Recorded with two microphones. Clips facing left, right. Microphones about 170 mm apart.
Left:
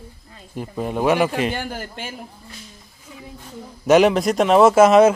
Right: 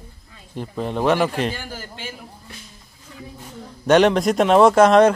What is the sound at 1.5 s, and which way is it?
Speech, 60° left (ahead or behind).